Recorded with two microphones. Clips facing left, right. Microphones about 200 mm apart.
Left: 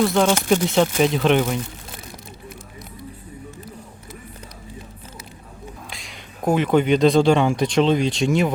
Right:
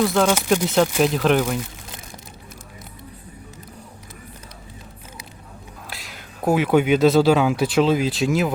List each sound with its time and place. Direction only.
0.0 s speech: centre (ahead or behind)
5.9 s speech: 5° right (ahead or behind)